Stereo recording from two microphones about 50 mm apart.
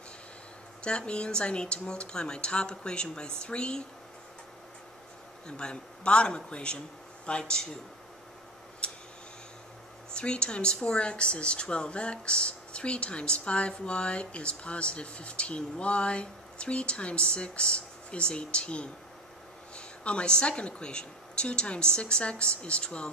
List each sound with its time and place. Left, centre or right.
0.8 s speech: centre
5.5 s speech: centre
8.8 s tick: centre
10.1 s speech: centre